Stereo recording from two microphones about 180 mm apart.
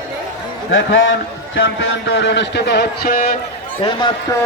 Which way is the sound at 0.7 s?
90° left.